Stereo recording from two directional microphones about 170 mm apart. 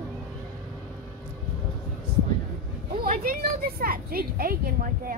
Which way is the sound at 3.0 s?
55° right (ahead or behind).